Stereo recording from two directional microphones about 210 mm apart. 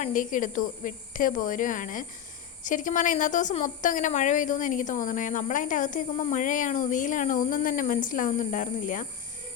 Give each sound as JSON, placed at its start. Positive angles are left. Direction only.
{"t": 0.0, "sound": "a woman's voice", "side_deg": 40}